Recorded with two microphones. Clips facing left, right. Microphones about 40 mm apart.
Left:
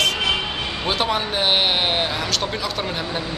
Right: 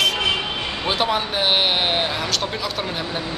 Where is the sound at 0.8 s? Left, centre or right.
Centre.